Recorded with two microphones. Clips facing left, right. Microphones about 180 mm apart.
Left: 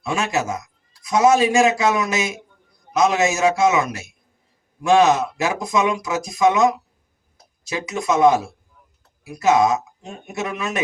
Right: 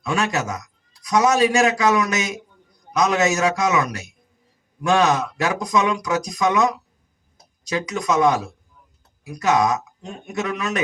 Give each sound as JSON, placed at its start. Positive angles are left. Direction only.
{"t": 0.0, "sound": "a man's voice", "side_deg": 25}